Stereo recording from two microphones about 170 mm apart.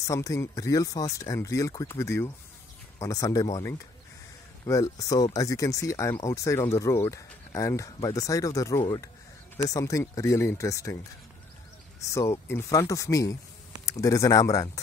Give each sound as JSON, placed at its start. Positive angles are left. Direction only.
{"t": 0.0, "sound": "speech", "side_deg": 20}
{"t": 12.1, "sound": "speech", "side_deg": 15}